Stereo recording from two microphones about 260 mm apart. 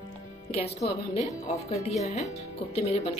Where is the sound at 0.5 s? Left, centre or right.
Left.